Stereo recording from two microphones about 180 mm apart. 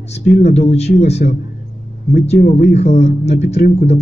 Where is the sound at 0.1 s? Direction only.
35° left (ahead or behind).